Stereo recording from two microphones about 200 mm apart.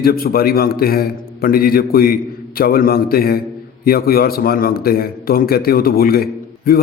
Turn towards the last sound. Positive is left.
turn(degrees=50)  # may be behind; listen again after turning